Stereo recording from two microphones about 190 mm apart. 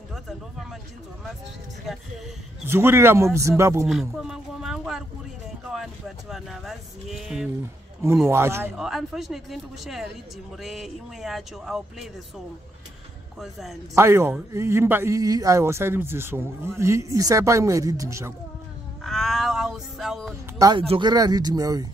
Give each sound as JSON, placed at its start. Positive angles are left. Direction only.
{"t": 0.1, "sound": "a sound", "side_deg": 0}
{"t": 2.6, "sound": "speech", "side_deg": -10}
{"t": 3.8, "sound": "speech", "side_deg": 0}
{"t": 8.3, "sound": "speech", "side_deg": -15}
{"t": 8.7, "sound": "speech", "side_deg": 0}
{"t": 13.4, "sound": "speech", "side_deg": 0}
{"t": 13.9, "sound": "speech", "side_deg": -15}
{"t": 19.0, "sound": "a sound", "side_deg": 0}
{"t": 20.5, "sound": "speech", "side_deg": -20}